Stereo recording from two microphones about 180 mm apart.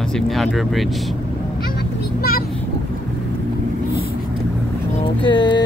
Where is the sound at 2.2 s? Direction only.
55° left (ahead or behind).